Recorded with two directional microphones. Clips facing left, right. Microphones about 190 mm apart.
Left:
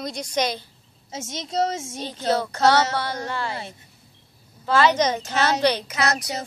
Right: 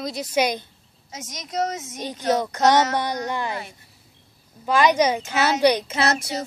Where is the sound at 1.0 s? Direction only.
25° left (ahead or behind).